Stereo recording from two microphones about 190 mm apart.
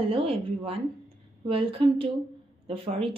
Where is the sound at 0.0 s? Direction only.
30° right (ahead or behind).